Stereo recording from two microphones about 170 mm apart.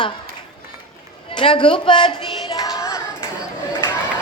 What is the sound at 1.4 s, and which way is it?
Speech, 30° left (ahead or behind).